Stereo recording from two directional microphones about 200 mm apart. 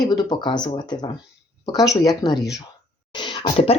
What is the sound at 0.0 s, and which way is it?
Speech, 20° left (ahead or behind).